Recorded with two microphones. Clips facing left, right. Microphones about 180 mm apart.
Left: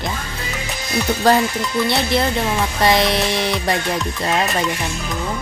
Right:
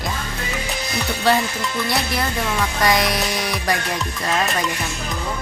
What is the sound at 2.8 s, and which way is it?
Music, 25° left (ahead or behind).